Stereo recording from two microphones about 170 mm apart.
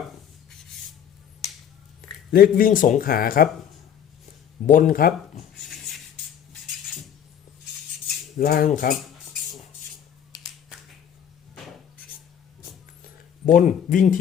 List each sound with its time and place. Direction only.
2.0 s speech: 60° left (ahead or behind)
4.6 s speech: 50° left (ahead or behind)
5.6 s a sound: centre (ahead or behind)
8.0 s cutlery: 65° left (ahead or behind)
8.6 s speech: 55° left (ahead or behind)
13.7 s speech: 50° left (ahead or behind)